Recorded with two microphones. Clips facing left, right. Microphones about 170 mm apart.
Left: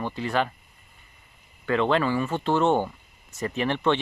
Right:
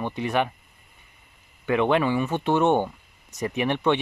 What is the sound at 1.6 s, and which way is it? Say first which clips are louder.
Speech: right 1 dB; 15° right (ahead or behind).